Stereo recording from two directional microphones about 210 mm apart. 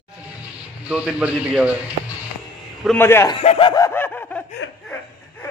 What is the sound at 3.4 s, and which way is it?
Snicker, 25° left (ahead or behind).